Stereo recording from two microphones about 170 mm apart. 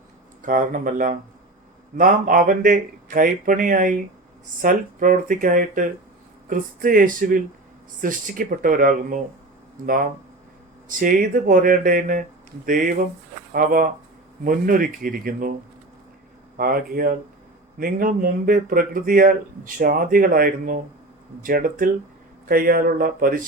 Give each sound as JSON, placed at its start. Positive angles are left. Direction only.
{"t": 0.4, "sound": "speech", "side_deg": -50}
{"t": 16.6, "sound": "speech", "side_deg": -60}